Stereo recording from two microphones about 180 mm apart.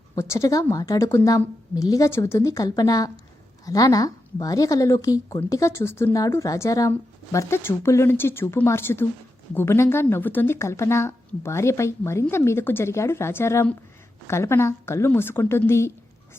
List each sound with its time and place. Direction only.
0.2 s a woman's voice: 15° left (ahead or behind)